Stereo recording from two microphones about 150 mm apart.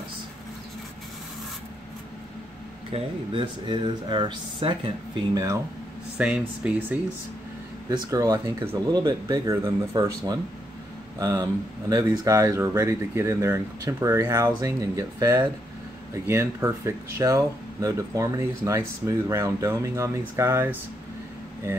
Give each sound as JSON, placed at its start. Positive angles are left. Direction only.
{"t": 2.9, "sound": "speech", "side_deg": -35}
{"t": 6.1, "sound": "speech", "side_deg": -10}
{"t": 7.9, "sound": "speech", "side_deg": -25}